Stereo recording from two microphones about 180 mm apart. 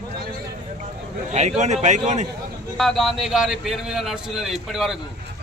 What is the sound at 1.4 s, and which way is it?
Speech, 40° right (ahead or behind).